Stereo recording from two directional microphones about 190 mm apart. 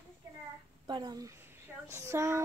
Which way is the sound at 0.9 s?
20° right (ahead or behind).